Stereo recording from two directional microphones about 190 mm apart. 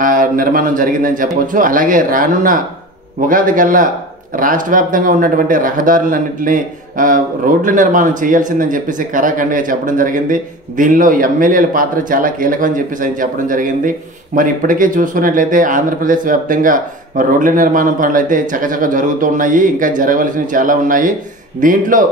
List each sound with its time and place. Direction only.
0.0 s a man's voice: 45° right (ahead or behind)